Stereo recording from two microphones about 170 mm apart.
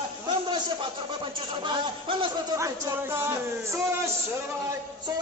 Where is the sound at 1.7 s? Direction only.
30° right (ahead or behind).